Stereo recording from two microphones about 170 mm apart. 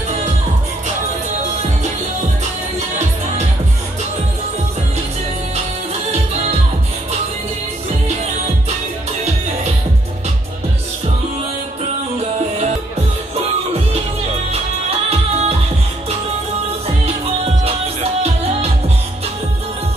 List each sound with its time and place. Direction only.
14.5 s music: 40° right (ahead or behind)
16.8 s music: 35° right (ahead or behind)